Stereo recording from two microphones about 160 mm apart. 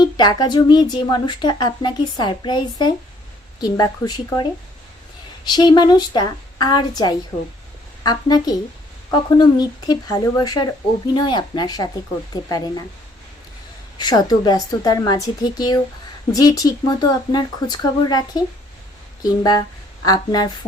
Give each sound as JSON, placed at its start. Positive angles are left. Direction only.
{"t": 0.2, "sound": "speech", "side_deg": 25}
{"t": 5.5, "sound": "speech", "side_deg": 25}
{"t": 14.0, "sound": "speech", "side_deg": 25}